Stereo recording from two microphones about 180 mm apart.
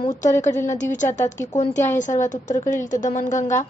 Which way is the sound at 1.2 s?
20° left (ahead or behind).